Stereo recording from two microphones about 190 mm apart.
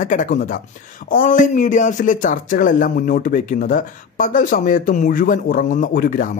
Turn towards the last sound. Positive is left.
turn(degrees=45)  # may be behind; listen again after turning